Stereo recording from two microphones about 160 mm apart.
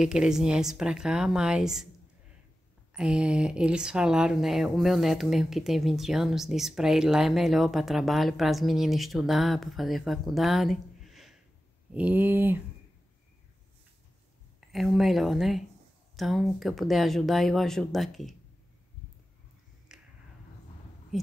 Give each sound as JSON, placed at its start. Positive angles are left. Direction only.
{"t": 0.0, "sound": "speech", "side_deg": -5}
{"t": 2.9, "sound": "speech", "side_deg": -5}
{"t": 14.7, "sound": "speech", "side_deg": 0}
{"t": 19.9, "sound": "a sound", "side_deg": -5}
{"t": 21.1, "sound": "speech", "side_deg": 0}